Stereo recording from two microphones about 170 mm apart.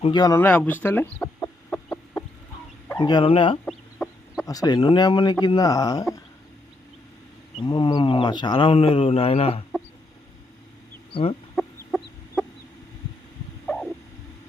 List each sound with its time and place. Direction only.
0.0 s chicken: 25° left (ahead or behind)
3.0 s speech: 25° left (ahead or behind)
3.9 s chicken: 10° left (ahead or behind)
4.4 s speech: 20° left (ahead or behind)
7.5 s speech: 25° left (ahead or behind)
11.1 s speech: 35° left (ahead or behind)
12.4 s chicken: 10° left (ahead or behind)